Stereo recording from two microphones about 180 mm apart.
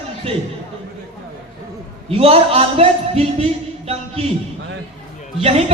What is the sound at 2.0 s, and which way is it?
A man's voice, 30° right (ahead or behind).